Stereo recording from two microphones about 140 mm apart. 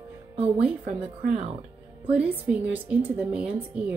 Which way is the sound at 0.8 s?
90° right.